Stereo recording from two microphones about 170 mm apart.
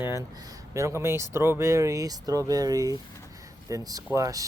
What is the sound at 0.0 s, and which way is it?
Speech, 15° right (ahead or behind).